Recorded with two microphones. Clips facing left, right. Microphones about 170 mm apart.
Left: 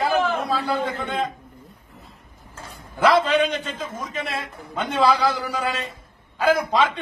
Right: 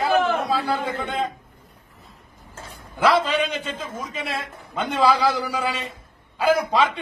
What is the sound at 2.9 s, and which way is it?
Speech, 10° right (ahead or behind).